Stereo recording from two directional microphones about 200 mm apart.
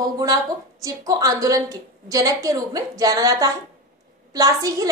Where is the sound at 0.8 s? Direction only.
15° right (ahead or behind).